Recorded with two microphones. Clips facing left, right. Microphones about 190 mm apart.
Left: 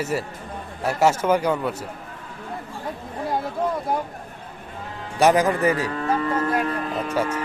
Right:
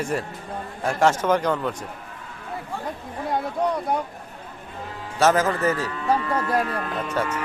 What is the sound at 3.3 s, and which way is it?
Speech, centre (ahead or behind).